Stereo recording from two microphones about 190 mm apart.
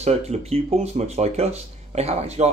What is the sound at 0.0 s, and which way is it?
Speech, 35° right (ahead or behind).